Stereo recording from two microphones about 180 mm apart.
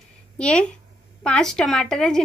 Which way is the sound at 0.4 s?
5° left (ahead or behind).